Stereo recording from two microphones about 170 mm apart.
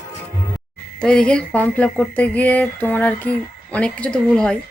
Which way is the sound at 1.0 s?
5° left (ahead or behind).